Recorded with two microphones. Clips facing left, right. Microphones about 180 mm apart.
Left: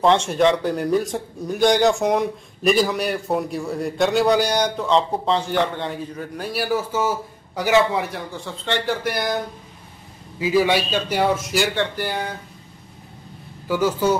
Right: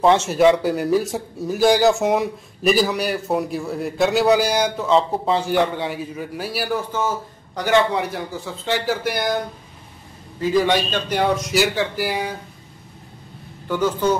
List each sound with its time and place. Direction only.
0.0 s speech: 5° right (ahead or behind)
10.4 s speech: 10° left (ahead or behind); by 12.4 s 5° right (ahead or behind)
13.7 s a man's voice: 10° left (ahead or behind)